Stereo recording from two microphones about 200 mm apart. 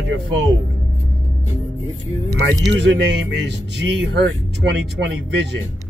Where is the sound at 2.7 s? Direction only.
65° right (ahead or behind).